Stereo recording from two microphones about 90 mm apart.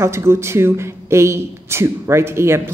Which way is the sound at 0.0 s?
30° right (ahead or behind).